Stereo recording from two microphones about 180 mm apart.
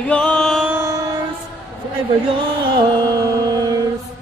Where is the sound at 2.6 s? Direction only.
25° right (ahead or behind).